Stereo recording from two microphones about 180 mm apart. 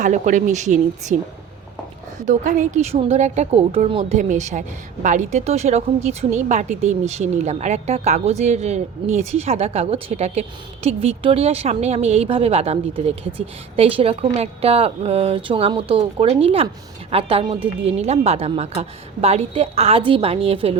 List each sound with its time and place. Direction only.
0.0 s speech: 45° right (ahead or behind)
2.1 s speech: 40° right (ahead or behind)